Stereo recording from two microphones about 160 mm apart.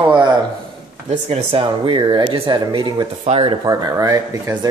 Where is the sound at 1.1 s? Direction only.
40° right (ahead or behind).